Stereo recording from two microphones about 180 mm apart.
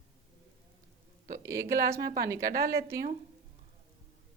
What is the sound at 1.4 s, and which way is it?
Speech, 15° right (ahead or behind).